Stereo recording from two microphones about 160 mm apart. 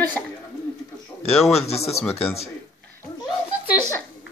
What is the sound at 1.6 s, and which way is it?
Speech, 40° left (ahead or behind).